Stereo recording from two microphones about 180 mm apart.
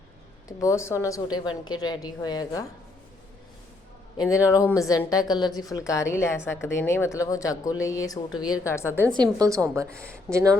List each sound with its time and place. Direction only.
0.4 s a woman's voice: 15° left (ahead or behind)
4.3 s speech: 15° left (ahead or behind)
9.1 s a woman's voice: 20° right (ahead or behind)